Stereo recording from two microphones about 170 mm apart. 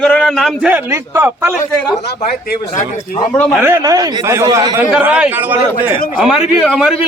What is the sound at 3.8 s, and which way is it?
Speech, 20° right (ahead or behind).